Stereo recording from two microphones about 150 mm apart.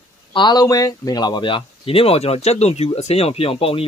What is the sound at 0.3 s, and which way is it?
Speech, 30° left (ahead or behind).